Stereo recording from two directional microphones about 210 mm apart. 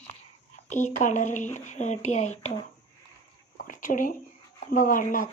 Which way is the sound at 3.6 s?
40° left (ahead or behind).